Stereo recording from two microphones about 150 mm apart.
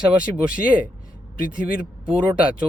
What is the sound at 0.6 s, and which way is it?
Speech, 10° right (ahead or behind).